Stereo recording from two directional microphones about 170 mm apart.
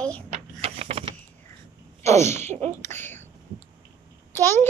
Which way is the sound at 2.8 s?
15° left (ahead or behind).